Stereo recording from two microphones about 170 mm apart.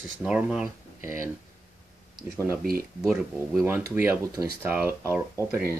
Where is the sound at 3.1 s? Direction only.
10° right (ahead or behind).